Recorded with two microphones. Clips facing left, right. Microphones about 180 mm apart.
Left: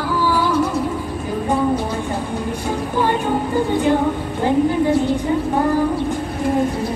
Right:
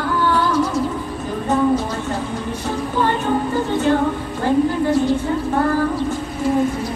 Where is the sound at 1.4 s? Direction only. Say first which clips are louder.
Right 2 dB; 10° left (ahead or behind).